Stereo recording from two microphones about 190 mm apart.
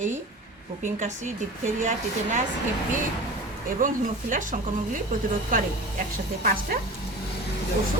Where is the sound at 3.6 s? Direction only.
45° right (ahead or behind).